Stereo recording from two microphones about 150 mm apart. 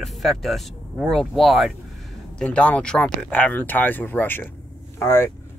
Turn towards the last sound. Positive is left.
turn(degrees=15)  # may be behind; listen again after turning